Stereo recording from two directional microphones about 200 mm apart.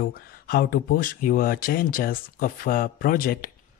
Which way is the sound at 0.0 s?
50° left (ahead or behind).